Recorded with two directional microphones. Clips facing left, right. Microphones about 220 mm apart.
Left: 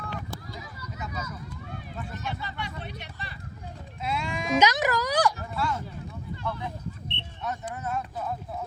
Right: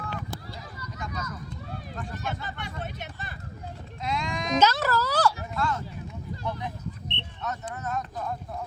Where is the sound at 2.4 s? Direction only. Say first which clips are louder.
Right 1 dB; 50° right (ahead or behind).